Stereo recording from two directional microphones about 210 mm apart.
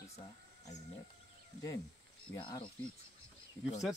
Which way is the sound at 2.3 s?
20° left (ahead or behind).